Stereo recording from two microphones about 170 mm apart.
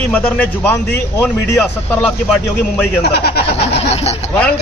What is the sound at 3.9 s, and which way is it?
Speech, 35° left (ahead or behind).